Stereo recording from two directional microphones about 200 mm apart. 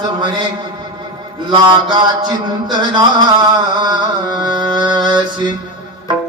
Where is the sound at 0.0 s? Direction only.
20° right (ahead or behind).